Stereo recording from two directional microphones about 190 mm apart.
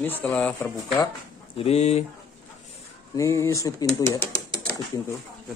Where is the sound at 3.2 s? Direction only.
15° left (ahead or behind).